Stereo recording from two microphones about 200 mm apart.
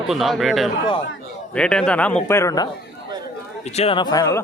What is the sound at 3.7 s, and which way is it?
Speech, 30° left (ahead or behind).